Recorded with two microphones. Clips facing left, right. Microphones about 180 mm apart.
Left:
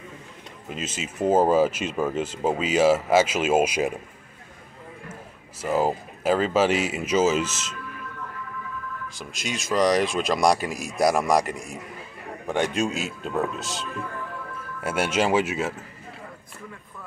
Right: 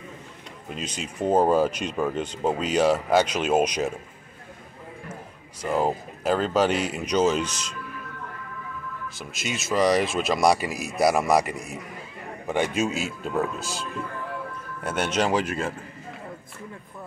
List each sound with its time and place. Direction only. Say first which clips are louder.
0.7 s speech: left 1 dB; centre (ahead or behind)
5.6 s speech: left 1 dB; 5° left (ahead or behind)
9.2 s speech: even; 5° right (ahead or behind)